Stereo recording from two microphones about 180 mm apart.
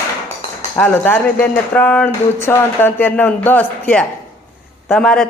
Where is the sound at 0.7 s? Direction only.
10° left (ahead or behind).